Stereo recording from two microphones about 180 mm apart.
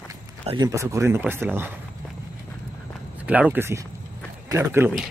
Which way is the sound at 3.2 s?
10° right (ahead or behind).